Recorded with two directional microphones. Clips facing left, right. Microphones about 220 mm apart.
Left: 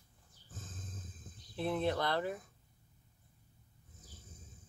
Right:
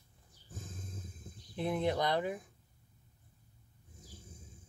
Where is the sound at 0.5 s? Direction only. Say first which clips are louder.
Right 3 dB; 10° right (ahead or behind).